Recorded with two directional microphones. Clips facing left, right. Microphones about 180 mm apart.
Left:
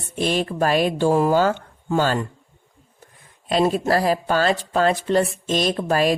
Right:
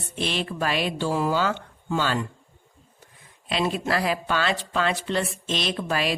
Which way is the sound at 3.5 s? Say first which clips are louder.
Left 6 dB; 45° left (ahead or behind).